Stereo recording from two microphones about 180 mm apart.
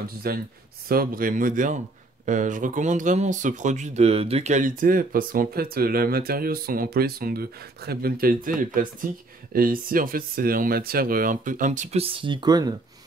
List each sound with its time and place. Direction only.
0.0 s speech: 55° right (ahead or behind); by 12.7 s 20° right (ahead or behind)